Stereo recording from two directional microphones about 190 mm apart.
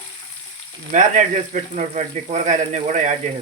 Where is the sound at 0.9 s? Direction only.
40° right (ahead or behind).